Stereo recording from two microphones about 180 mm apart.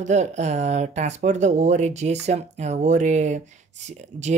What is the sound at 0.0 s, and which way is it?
Speech, 40° right (ahead or behind).